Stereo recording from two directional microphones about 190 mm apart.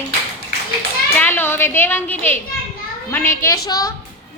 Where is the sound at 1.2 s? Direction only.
10° left (ahead or behind).